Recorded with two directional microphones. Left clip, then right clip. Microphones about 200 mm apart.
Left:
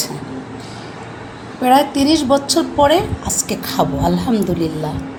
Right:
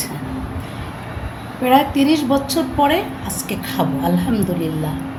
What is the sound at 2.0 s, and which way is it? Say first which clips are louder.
A woman's voice: left 2 dB; 30° left (ahead or behind).